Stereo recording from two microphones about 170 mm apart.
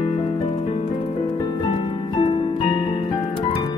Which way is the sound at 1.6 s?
25° left (ahead or behind).